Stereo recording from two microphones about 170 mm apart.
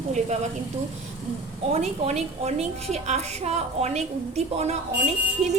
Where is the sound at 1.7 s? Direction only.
40° right (ahead or behind).